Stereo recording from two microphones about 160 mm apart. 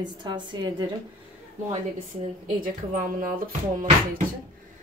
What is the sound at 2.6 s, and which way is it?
Speech, 60° right (ahead or behind).